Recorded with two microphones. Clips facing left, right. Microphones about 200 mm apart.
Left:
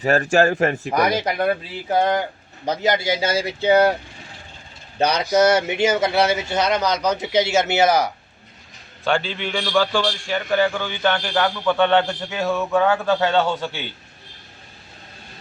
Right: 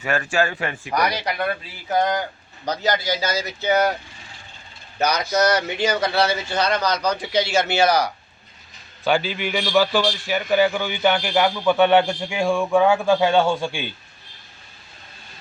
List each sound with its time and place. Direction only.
0.0 s speech: 35° left (ahead or behind)
1.9 s speech: 30° left (ahead or behind)
4.9 s speech: 30° left (ahead or behind)
9.0 s a man's voice: 5° right (ahead or behind)